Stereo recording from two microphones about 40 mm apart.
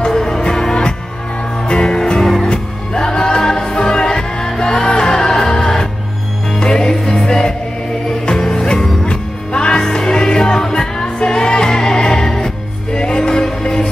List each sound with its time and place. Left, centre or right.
0.0 s music: centre